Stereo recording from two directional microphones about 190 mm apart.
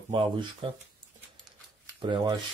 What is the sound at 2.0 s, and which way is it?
Speech, 25° right (ahead or behind).